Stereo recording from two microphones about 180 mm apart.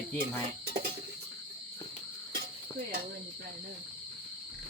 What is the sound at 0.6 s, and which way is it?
Cricket, 55° right (ahead or behind).